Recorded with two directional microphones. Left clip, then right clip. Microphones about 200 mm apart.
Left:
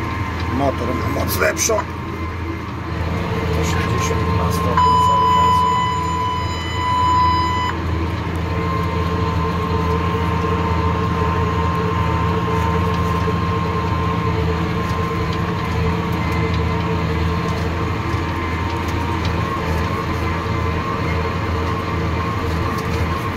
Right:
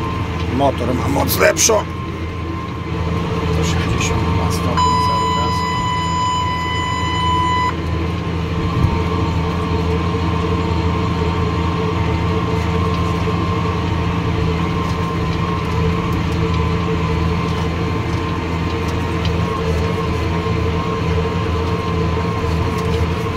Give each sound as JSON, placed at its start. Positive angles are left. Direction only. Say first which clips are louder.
{"t": 1.4, "sound": "speech", "louder": "right 5 dB", "side_deg": -25}